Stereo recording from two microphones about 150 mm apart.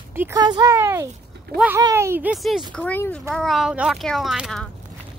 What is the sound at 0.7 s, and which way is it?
Speech, 15° right (ahead or behind).